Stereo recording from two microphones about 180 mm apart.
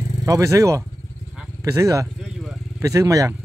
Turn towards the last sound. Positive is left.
turn(degrees=-20)  # may be behind; listen again after turning